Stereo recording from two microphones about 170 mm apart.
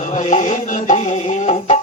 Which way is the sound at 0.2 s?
45° left (ahead or behind).